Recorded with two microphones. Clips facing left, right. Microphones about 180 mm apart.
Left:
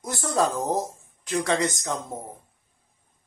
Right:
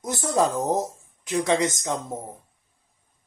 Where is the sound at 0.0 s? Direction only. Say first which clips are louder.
Right 2 dB; 20° right (ahead or behind).